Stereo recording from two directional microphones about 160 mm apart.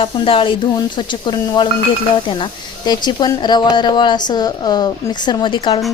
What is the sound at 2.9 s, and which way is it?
A woman's voice, 25° left (ahead or behind).